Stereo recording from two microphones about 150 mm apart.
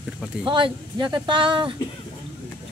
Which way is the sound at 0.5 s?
30° right (ahead or behind).